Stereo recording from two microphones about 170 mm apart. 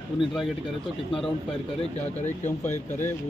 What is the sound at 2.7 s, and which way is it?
Speech, 45° left (ahead or behind).